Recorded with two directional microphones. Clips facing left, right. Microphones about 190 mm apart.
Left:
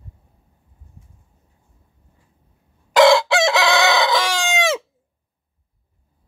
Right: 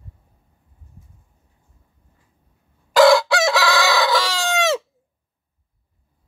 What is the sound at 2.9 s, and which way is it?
Chicken, 20° left (ahead or behind).